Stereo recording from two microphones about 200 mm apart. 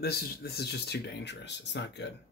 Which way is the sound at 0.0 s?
50° left (ahead or behind).